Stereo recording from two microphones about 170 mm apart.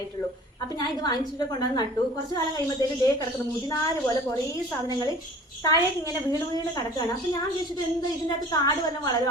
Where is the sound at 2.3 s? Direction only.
20° left (ahead or behind).